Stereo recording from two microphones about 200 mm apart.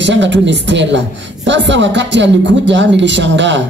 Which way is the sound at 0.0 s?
65° right (ahead or behind).